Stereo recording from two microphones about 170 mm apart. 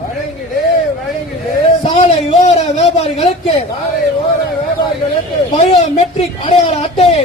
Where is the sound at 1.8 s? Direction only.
35° left (ahead or behind).